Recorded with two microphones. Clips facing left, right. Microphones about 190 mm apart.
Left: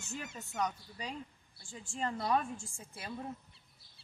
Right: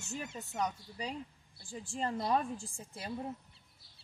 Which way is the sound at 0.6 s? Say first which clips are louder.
Even; 30° right (ahead or behind).